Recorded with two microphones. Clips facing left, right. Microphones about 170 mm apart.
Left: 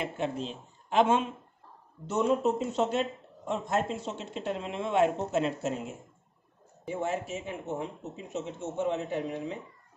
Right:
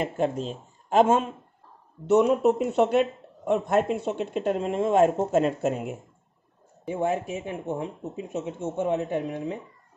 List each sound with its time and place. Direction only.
0.0 s speech: 45° right (ahead or behind)
2.0 s a man's voice: 65° right (ahead or behind)